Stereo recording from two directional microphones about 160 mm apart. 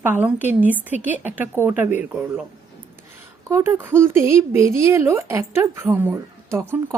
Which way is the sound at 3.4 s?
15° right (ahead or behind).